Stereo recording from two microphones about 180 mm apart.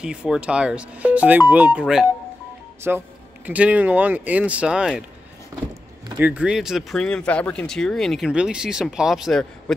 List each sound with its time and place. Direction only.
0.0 s speech: 5° right (ahead or behind)
5.5 s power windows: 15° right (ahead or behind)
6.1 s speech: 10° right (ahead or behind)